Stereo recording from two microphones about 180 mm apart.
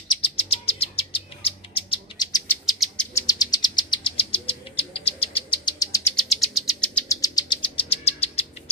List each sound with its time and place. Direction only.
0.5 s bird: 35° left (ahead or behind)
2.6 s bird: centre (ahead or behind)
3.2 s bird: 20° left (ahead or behind)
6.2 s bird: centre (ahead or behind)
7.1 s bird: 20° left (ahead or behind); by 8.5 s 35° left (ahead or behind)